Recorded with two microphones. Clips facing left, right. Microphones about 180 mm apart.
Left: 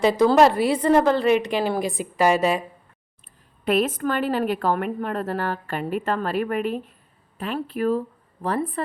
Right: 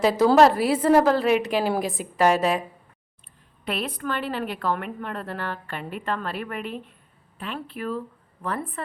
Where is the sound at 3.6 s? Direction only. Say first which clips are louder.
Left 8 dB; 45° left (ahead or behind).